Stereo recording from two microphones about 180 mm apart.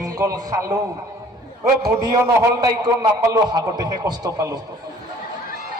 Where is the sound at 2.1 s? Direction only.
20° right (ahead or behind).